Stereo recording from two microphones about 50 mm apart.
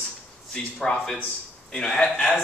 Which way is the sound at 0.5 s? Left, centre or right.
Centre.